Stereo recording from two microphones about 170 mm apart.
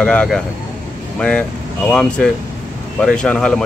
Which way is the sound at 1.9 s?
5° left (ahead or behind).